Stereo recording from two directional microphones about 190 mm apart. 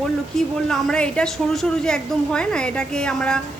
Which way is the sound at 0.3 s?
5° left (ahead or behind).